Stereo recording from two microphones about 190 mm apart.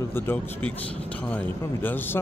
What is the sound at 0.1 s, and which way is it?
Speech, 10° left (ahead or behind).